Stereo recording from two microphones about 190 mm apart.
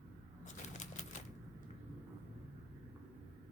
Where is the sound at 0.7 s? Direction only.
40° left (ahead or behind).